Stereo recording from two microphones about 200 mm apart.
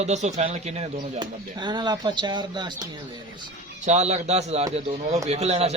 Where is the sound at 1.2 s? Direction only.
20° right (ahead or behind).